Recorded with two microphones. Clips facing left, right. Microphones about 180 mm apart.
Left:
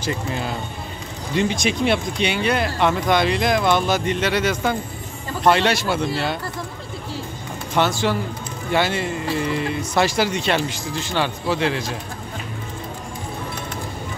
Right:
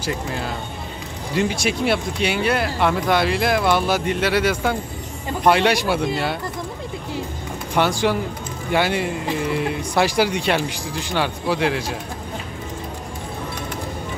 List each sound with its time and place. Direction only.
1.3 s speech: 5° right (ahead or behind)
7.7 s speech: 15° right (ahead or behind)